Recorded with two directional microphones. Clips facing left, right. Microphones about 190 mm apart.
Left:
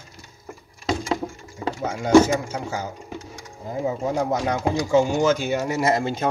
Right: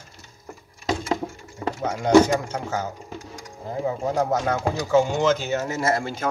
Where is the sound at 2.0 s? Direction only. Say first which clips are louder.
Left 1 dB; 10° left (ahead or behind).